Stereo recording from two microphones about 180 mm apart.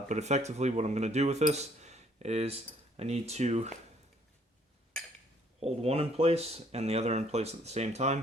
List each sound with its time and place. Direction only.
0.1 s speech: 40° right (ahead or behind)
5.5 s speech: 35° right (ahead or behind)